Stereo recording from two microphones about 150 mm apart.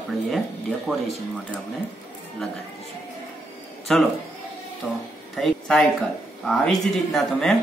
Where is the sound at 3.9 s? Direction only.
Centre (ahead or behind).